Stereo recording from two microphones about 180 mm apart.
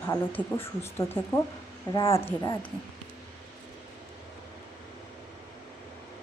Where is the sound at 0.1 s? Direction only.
15° left (ahead or behind).